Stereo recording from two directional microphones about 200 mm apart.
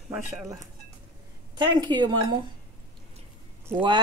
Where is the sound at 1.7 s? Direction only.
20° right (ahead or behind).